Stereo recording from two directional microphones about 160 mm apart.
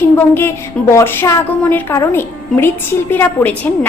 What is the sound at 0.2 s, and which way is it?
A woman's voice, 15° left (ahead or behind).